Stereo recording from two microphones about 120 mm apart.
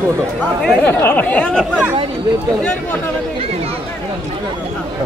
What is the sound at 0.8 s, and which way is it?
Speech, 15° left (ahead or behind).